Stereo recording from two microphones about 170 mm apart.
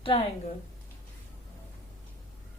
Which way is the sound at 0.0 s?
35° left (ahead or behind).